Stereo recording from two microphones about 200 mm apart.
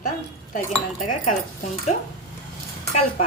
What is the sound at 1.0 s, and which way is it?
Speech, 40° left (ahead or behind).